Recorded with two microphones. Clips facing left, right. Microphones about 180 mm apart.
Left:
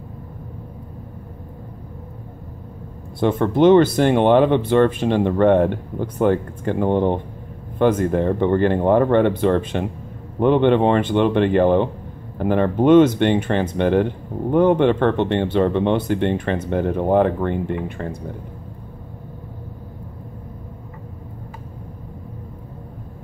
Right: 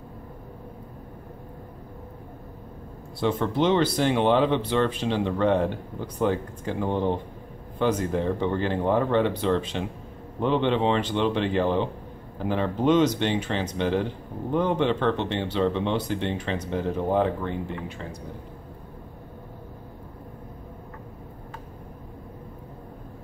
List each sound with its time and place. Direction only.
3.2 s speech: 55° left (ahead or behind)